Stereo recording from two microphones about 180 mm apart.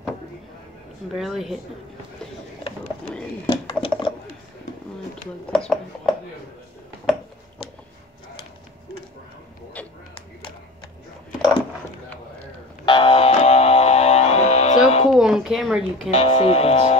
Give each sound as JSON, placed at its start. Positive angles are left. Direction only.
{"t": 1.1, "sound": "a woman's voice", "side_deg": 0}
{"t": 3.4, "sound": "a sound", "side_deg": 30}
{"t": 5.5, "sound": "a woman's voice", "side_deg": 5}
{"t": 9.8, "sound": "a sound", "side_deg": 10}
{"t": 12.8, "sound": "music", "side_deg": 30}
{"t": 15.0, "sound": "a woman's voice", "side_deg": -5}
{"t": 16.1, "sound": "speech", "side_deg": 35}